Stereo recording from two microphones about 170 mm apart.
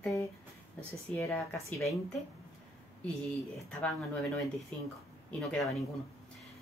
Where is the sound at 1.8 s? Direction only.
Centre (ahead or behind).